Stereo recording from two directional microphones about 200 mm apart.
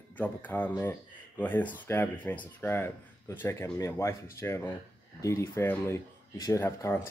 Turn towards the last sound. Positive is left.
turn(degrees=15)  # may be behind; listen again after turning